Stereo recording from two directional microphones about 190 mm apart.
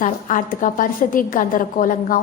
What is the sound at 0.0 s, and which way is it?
A woman's voice, 45° left (ahead or behind).